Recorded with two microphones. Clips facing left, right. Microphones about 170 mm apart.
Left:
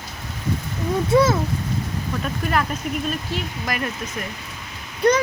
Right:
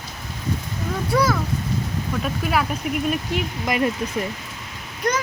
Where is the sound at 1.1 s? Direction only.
25° left (ahead or behind).